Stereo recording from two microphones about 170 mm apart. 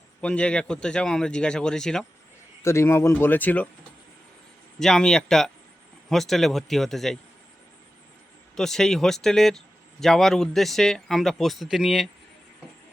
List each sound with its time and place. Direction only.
0.2 s speech: 5° left (ahead or behind)
2.6 s speech: 15° left (ahead or behind)
4.8 s speech: 5° left (ahead or behind)
8.5 s speech: 5° left (ahead or behind)